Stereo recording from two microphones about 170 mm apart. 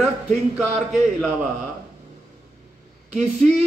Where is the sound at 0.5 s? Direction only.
5° right (ahead or behind).